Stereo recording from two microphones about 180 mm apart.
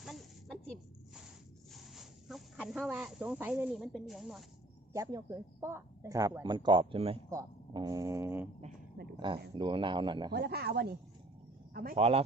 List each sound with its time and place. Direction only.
0.0 s a sound: centre (ahead or behind)
1.7 s speech: centre (ahead or behind)
4.9 s speech: 20° right (ahead or behind)
7.2 s speech: 20° right (ahead or behind)
9.1 s speech: 25° right (ahead or behind)
10.3 s speech: 65° right (ahead or behind)